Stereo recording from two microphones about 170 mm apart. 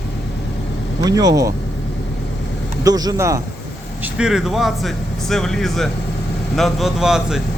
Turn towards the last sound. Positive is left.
turn(degrees=-5)  # may be behind; listen again after turning